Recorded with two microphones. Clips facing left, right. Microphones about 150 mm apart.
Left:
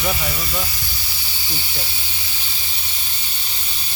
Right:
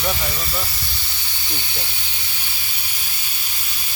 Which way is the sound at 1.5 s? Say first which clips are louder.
Left 1 dB; 20° right (ahead or behind).